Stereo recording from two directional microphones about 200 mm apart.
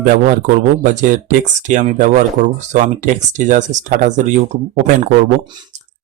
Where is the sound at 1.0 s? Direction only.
40° right (ahead or behind).